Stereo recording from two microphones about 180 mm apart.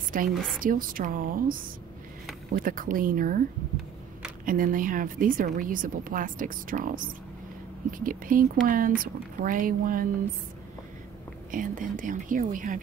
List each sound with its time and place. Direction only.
0.3 s a woman's voice: centre (ahead or behind)
0.6 s a woman's voice: 50° right (ahead or behind)
4.5 s a woman's voice: 50° right (ahead or behind)
11.5 s a woman's voice: 45° right (ahead or behind)